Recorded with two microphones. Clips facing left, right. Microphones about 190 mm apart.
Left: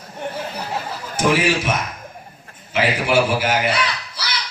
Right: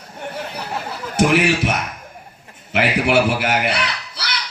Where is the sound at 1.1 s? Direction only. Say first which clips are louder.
Right 2 dB; 65° right (ahead or behind).